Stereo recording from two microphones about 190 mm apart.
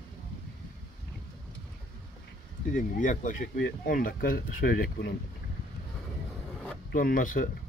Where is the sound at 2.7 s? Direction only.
40° left (ahead or behind).